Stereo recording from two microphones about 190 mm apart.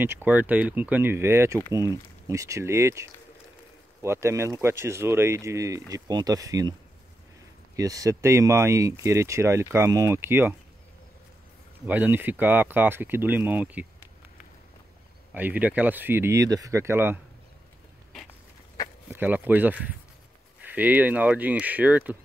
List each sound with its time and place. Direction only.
0.0 s speech: 10° right (ahead or behind)
7.7 s speech: 15° right (ahead or behind)
11.8 s speech: 10° right (ahead or behind)
15.3 s speech: 10° right (ahead or behind)
19.1 s speech: 10° right (ahead or behind)